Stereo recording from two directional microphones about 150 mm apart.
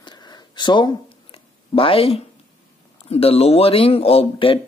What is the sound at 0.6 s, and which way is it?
Speech, 30° left (ahead or behind).